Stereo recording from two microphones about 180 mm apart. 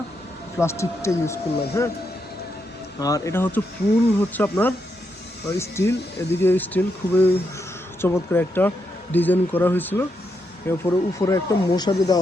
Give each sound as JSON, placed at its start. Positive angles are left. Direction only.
{"t": 0.6, "sound": "speech", "side_deg": 15}
{"t": 3.0, "sound": "speech", "side_deg": 20}